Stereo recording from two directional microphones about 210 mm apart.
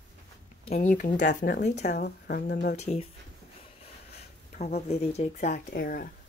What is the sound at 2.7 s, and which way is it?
Speech, 30° left (ahead or behind).